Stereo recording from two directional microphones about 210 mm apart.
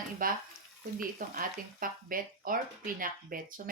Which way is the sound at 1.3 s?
40° right (ahead or behind).